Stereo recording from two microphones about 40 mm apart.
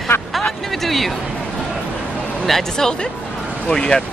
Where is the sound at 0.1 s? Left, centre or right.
Left.